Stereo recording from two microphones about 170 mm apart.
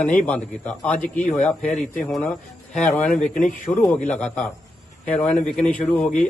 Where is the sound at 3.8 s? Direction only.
5° left (ahead or behind).